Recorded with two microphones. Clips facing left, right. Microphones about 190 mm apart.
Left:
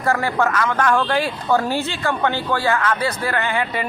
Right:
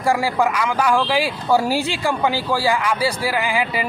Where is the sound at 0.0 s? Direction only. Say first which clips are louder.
Right 1 dB; 10° right (ahead or behind).